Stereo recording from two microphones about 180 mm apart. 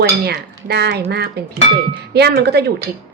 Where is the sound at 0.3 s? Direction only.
70° right (ahead or behind).